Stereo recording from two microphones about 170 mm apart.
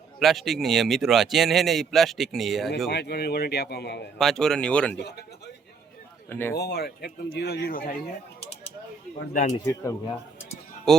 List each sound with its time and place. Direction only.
0.2 s speech: centre (ahead or behind)
2.9 s speech: 75° left (ahead or behind)
4.2 s speech: 5° left (ahead or behind)
4.9 s speech: 75° left (ahead or behind)
6.2 s speech: 15° left (ahead or behind)
6.6 s speech: 70° left (ahead or behind)
9.3 s speech: 45° left (ahead or behind)